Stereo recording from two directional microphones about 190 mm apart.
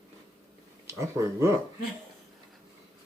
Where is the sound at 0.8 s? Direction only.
15° right (ahead or behind).